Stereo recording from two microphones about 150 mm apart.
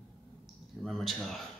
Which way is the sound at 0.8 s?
Centre (ahead or behind).